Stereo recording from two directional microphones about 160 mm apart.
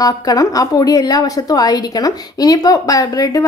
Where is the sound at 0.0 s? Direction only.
20° left (ahead or behind).